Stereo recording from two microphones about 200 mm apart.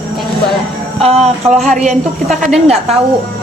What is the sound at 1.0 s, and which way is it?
Speech, 30° right (ahead or behind).